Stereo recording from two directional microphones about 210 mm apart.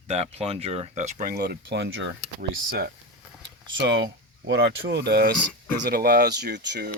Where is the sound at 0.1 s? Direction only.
30° right (ahead or behind); by 2.9 s 50° right (ahead or behind).